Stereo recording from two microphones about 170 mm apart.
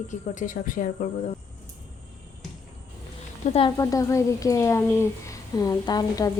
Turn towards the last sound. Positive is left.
turn(degrees=20)  # may be behind; listen again after turning